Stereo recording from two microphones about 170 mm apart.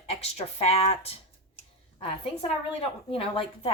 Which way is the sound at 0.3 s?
40° left (ahead or behind).